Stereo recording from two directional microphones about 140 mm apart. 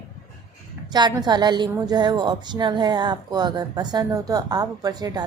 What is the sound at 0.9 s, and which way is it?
A woman's voice, 30° right (ahead or behind).